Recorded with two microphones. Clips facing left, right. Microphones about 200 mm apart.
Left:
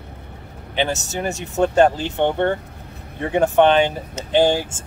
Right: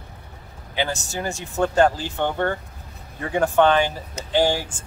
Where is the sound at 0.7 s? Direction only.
20° left (ahead or behind).